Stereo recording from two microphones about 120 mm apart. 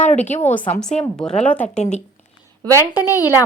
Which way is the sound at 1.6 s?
70° left (ahead or behind).